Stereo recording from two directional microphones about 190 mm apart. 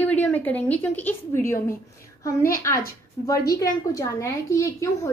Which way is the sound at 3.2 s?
20° left (ahead or behind).